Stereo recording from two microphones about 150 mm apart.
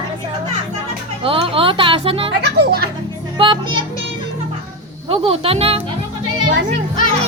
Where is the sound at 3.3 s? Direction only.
35° right (ahead or behind).